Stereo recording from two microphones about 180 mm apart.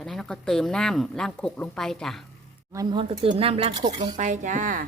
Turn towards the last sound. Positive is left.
turn(degrees=-45)  # may be behind; listen again after turning